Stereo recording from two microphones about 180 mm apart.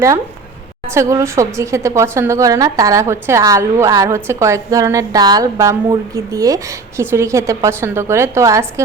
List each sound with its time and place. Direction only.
0.9 s a woman's voice: 15° right (ahead or behind)